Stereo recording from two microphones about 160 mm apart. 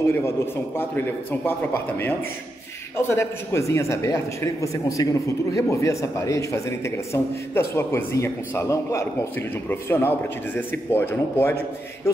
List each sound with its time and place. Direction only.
0.0 s a man's voice: 15° left (ahead or behind)